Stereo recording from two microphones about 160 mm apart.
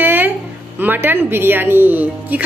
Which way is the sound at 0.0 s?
10° right (ahead or behind).